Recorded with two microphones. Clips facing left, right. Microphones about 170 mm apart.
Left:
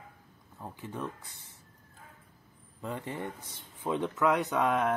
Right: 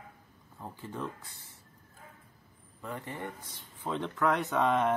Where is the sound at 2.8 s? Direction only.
25° left (ahead or behind).